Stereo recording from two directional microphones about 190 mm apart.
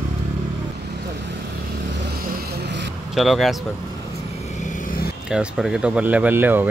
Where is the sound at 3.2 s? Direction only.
Centre (ahead or behind).